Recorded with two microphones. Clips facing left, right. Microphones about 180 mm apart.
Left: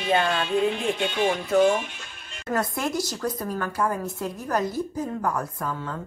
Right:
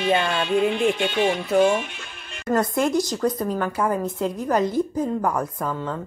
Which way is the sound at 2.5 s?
5° left (ahead or behind).